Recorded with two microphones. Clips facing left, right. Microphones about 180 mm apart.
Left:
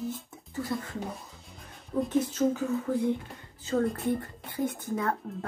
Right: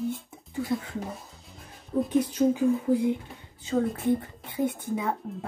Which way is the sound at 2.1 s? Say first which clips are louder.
Right 3 dB; 15° right (ahead or behind).